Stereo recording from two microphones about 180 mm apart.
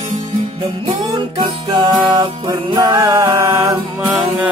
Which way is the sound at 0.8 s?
25° right (ahead or behind).